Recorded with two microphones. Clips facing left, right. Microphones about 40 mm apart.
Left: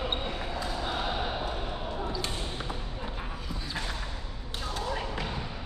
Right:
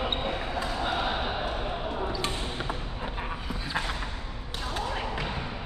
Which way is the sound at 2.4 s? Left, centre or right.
Right.